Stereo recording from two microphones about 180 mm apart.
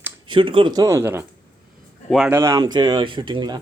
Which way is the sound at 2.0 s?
Centre (ahead or behind).